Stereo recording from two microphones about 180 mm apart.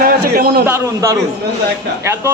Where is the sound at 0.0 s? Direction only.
55° right (ahead or behind).